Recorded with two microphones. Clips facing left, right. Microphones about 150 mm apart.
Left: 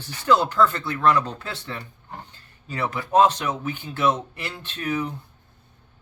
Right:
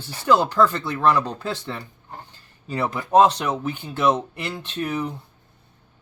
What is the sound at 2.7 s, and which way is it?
Speech, 35° right (ahead or behind).